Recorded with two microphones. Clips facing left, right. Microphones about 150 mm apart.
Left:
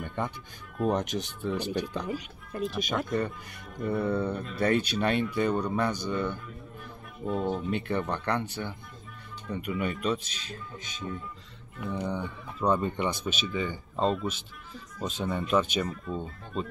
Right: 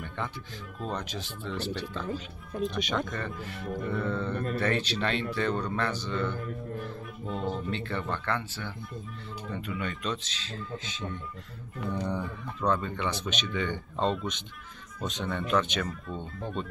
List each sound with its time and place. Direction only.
0.8 s speech: 15° left (ahead or behind)
2.5 s speech: centre (ahead or behind)
3.9 s speech: 15° left (ahead or behind)
7.9 s speech: 15° left (ahead or behind)
11.8 s speech: centre (ahead or behind)